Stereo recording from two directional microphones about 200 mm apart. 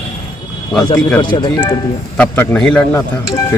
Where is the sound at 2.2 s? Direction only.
5° left (ahead or behind).